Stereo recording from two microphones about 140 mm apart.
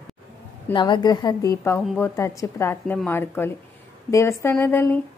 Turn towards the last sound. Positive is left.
turn(degrees=15)  # may be behind; listen again after turning